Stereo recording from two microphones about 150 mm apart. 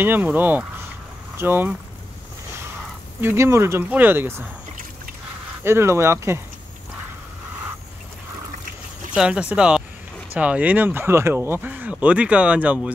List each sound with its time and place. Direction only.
0.0 s speech: 10° right (ahead or behind)
3.2 s speech: 15° right (ahead or behind)
5.6 s speech: 15° right (ahead or behind)
9.1 s speech: 5° right (ahead or behind)